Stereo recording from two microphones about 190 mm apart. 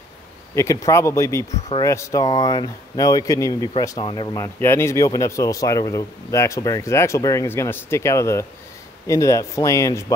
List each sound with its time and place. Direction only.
0.6 s speech: 15° left (ahead or behind)